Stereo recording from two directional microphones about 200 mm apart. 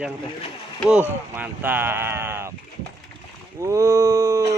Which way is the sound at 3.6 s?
15° right (ahead or behind).